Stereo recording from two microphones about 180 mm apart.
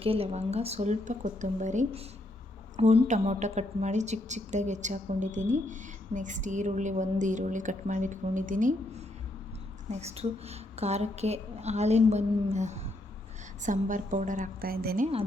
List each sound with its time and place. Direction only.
0.0 s a woman's voice: 30° right (ahead or behind)
9.9 s a woman's voice: 35° right (ahead or behind); by 15.0 s 55° right (ahead or behind)